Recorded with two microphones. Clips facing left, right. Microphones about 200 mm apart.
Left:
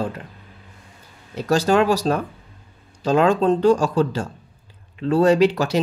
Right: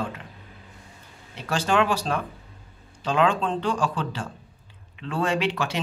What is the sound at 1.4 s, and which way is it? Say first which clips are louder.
Speech: left 6 dB; 40° left (ahead or behind).